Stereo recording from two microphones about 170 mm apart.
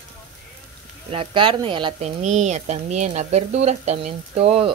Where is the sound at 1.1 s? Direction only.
30° right (ahead or behind).